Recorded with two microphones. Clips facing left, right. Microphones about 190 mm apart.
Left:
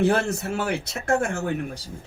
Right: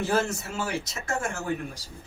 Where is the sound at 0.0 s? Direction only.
60° left (ahead or behind).